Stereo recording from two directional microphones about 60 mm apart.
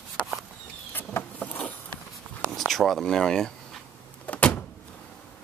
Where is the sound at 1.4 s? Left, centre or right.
Left.